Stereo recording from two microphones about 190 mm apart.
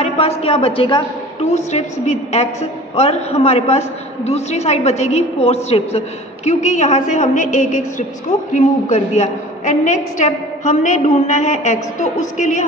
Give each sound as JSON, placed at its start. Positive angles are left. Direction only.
{"t": 0.4, "sound": "a woman's voice", "side_deg": 30}
{"t": 1.5, "sound": "a woman's voice", "side_deg": 35}